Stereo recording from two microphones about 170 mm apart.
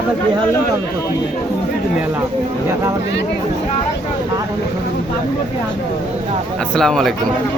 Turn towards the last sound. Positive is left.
turn(degrees=5)  # may be behind; listen again after turning